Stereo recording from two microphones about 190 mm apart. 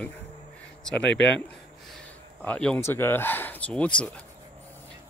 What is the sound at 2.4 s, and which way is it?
Speech, 5° left (ahead or behind).